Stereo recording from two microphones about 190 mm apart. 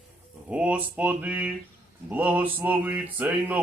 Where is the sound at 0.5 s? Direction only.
5° right (ahead or behind).